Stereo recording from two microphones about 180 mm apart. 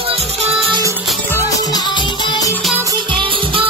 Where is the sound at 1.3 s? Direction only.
20° left (ahead or behind).